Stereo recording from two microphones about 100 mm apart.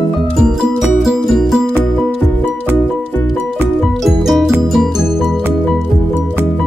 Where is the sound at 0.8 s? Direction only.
Centre (ahead or behind).